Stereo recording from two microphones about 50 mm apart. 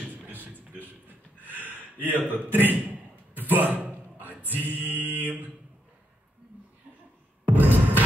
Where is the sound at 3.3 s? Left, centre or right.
Right.